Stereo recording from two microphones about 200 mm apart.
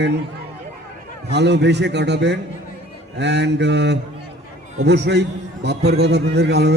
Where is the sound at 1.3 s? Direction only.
60° right (ahead or behind).